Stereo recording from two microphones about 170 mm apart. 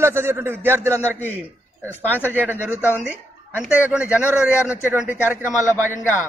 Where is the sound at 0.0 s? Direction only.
15° right (ahead or behind).